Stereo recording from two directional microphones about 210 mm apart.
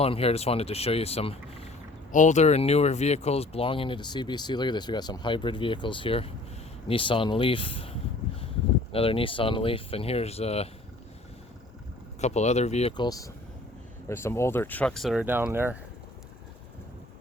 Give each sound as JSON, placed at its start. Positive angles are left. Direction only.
{"t": 0.0, "sound": "speech", "side_deg": 30}
{"t": 12.2, "sound": "speech", "side_deg": 30}
{"t": 13.1, "sound": "speech", "side_deg": 15}